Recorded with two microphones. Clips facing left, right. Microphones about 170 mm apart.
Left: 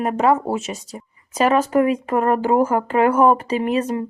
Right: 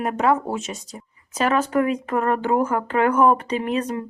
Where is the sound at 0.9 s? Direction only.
10° left (ahead or behind).